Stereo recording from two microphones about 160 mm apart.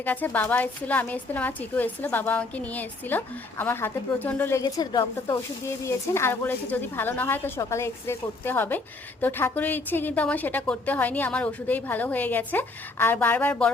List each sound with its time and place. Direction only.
0.0 s a woman's voice: 10° left (ahead or behind)
4.6 s a woman's voice: 30° left (ahead or behind); by 13.7 s 10° left (ahead or behind)